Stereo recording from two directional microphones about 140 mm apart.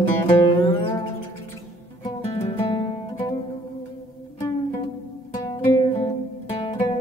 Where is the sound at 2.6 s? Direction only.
35° left (ahead or behind).